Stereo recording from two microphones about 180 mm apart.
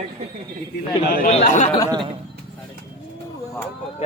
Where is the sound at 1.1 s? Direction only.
50° left (ahead or behind).